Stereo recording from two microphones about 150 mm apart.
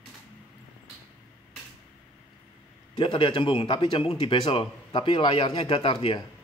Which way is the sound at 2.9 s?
35° left (ahead or behind).